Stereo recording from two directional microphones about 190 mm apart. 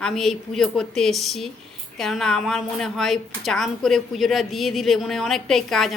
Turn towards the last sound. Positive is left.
turn(degrees=0)  # may be behind; listen again after turning